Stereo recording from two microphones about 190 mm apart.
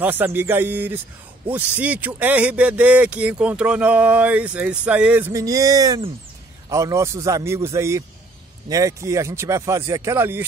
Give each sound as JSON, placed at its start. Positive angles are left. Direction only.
{"t": 0.0, "sound": "speech", "side_deg": -10}